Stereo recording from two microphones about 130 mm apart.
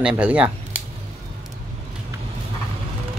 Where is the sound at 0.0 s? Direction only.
10° right (ahead or behind).